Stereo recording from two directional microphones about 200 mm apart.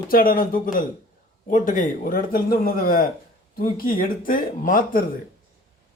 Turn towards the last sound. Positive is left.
turn(degrees=45)  # may be behind; listen again after turning